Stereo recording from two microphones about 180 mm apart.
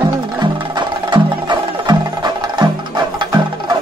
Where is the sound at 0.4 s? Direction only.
25° right (ahead or behind).